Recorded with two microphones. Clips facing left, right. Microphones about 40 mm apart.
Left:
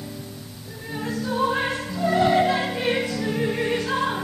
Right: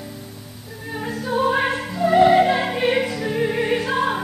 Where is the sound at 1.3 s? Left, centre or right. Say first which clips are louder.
Right 4 dB; centre.